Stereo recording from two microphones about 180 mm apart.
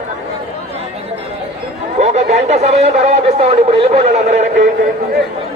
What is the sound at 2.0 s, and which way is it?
Speech, 40° right (ahead or behind).